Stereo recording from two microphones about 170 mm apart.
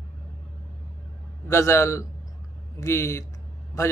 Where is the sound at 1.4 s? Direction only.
15° left (ahead or behind).